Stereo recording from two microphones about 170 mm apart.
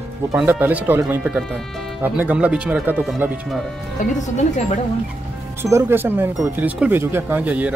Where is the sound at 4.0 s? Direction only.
50° left (ahead or behind).